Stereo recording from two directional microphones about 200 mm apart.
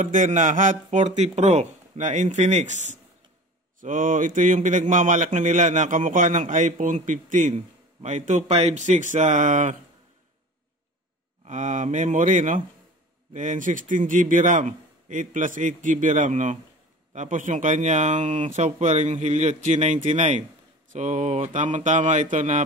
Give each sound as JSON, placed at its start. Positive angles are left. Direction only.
{"t": 0.0, "sound": "a man's voice", "side_deg": -40}
{"t": 11.4, "sound": "a man's voice", "side_deg": -35}